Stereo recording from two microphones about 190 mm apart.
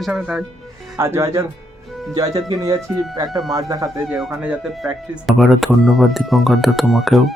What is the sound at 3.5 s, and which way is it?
Speech, 20° right (ahead or behind).